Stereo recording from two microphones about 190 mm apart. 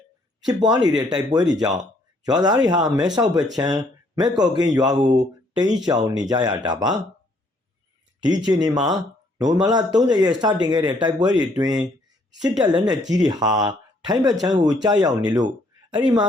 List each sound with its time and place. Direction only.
0.4 s speech: 20° right (ahead or behind)
8.4 s speech: 20° right (ahead or behind)